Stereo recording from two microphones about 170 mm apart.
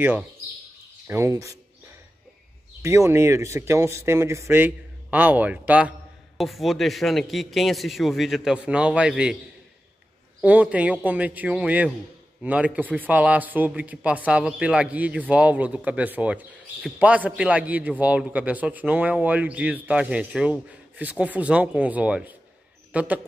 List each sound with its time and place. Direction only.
1.0 s speech: 15° right (ahead or behind)
2.8 s speech: 15° right (ahead or behind)
10.4 s speech: 10° right (ahead or behind)